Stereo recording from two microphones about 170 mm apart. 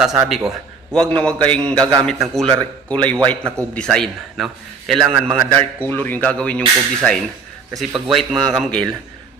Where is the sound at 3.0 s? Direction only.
5° left (ahead or behind).